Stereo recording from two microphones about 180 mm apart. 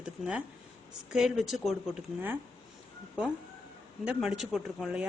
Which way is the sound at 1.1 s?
Centre (ahead or behind).